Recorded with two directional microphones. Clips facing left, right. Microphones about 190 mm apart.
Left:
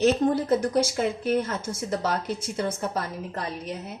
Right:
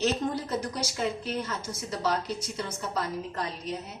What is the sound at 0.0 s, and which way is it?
A woman's voice, 50° left (ahead or behind).